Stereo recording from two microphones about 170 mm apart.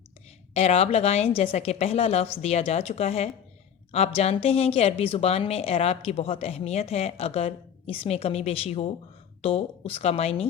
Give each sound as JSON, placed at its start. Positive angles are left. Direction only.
{"t": 0.5, "sound": "a woman's voice", "side_deg": 35}